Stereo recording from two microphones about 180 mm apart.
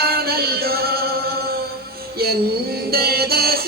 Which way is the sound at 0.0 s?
60° right (ahead or behind).